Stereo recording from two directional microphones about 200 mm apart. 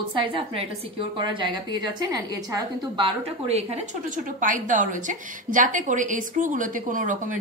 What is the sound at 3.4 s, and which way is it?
A woman's voice, 35° right (ahead or behind).